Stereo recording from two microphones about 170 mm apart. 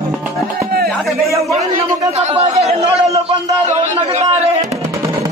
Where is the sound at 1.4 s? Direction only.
40° right (ahead or behind).